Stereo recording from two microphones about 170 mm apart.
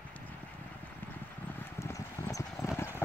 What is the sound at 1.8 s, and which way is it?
Clip-clop, 15° left (ahead or behind).